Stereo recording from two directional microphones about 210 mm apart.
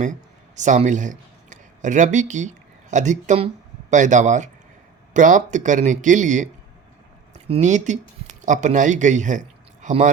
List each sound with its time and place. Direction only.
0.0 s a man's voice: 35° right (ahead or behind)